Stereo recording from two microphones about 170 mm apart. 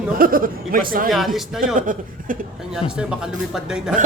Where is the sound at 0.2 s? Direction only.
55° right (ahead or behind).